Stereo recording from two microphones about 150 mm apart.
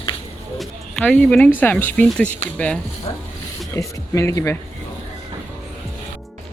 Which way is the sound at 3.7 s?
20° left (ahead or behind).